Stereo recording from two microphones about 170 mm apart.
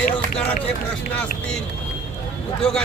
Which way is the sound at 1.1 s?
5° left (ahead or behind).